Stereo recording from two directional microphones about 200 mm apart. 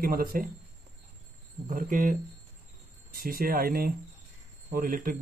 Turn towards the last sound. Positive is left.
turn(degrees=-45)  # may be behind; listen again after turning